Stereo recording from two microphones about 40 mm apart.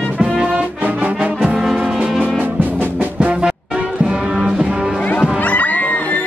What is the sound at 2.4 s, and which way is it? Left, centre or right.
Music, right.